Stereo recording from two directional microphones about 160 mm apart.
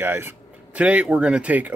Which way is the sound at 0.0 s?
15° right (ahead or behind).